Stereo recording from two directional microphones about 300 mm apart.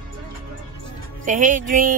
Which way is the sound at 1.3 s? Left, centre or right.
Right.